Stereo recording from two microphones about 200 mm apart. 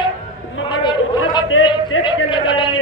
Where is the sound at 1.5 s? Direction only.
90° left.